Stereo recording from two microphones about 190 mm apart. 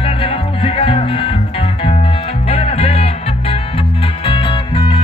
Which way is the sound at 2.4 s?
30° left (ahead or behind).